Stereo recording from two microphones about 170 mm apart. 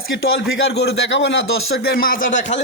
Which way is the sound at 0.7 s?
75° left (ahead or behind).